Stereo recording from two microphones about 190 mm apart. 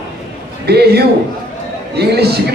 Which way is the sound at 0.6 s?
60° right (ahead or behind).